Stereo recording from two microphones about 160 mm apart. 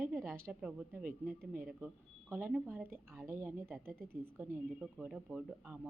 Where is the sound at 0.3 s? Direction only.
15° right (ahead or behind).